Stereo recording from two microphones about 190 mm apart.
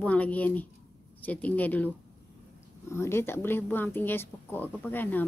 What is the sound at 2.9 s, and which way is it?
Speech, 15° left (ahead or behind).